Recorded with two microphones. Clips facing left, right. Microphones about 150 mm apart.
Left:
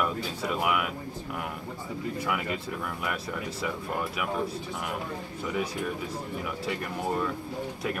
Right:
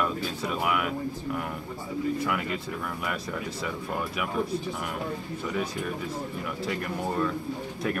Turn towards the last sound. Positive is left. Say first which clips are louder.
# right 1 dB
turn(degrees=5)  # may be behind; listen again after turning